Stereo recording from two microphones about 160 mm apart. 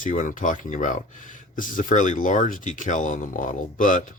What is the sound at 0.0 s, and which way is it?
Speech, 55° left (ahead or behind).